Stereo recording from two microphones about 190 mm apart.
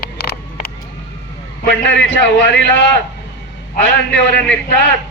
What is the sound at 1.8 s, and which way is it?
A man's voice, 70° left (ahead or behind).